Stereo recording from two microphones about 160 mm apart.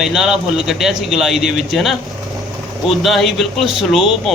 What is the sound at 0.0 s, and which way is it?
Speech, centre (ahead or behind).